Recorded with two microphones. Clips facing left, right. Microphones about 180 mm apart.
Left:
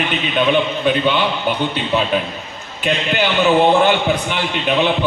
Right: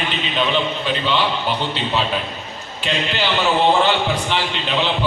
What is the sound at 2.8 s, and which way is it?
A man's voice, 55° left (ahead or behind).